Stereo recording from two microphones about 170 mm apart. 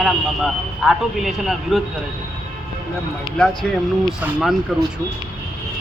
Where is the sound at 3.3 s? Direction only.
5° left (ahead or behind).